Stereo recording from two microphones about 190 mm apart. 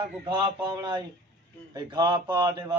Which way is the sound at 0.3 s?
20° right (ahead or behind).